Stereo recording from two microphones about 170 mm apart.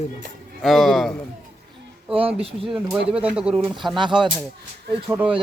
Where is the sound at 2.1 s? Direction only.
35° right (ahead or behind).